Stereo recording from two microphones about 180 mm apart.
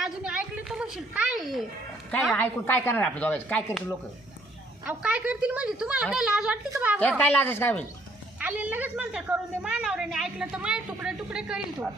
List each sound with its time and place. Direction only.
0.0 s a sound: 5° right (ahead or behind)
2.0 s a woman's voice: 5° left (ahead or behind)
4.9 s a woman's voice: 5° right (ahead or behind)
7.2 s a woman's voice: 10° left (ahead or behind)
8.4 s a woman's voice: 10° right (ahead or behind)